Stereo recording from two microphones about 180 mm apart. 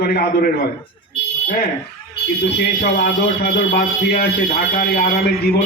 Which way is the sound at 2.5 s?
65° left (ahead or behind).